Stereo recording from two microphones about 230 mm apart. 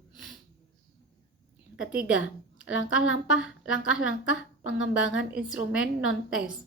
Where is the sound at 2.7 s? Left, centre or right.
Left.